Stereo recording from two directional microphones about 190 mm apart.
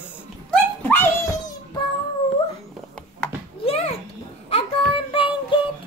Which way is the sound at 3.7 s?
30° left (ahead or behind).